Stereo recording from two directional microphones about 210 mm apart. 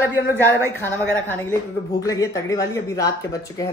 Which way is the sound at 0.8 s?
10° left (ahead or behind).